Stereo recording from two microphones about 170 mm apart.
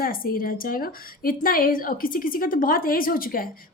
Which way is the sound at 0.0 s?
60° left (ahead or behind).